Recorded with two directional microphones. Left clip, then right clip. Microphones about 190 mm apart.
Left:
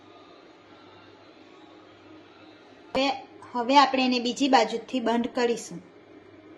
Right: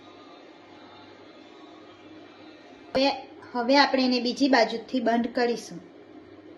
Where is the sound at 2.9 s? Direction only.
20° left (ahead or behind).